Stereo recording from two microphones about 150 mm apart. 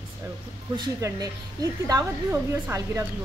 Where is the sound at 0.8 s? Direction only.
25° right (ahead or behind).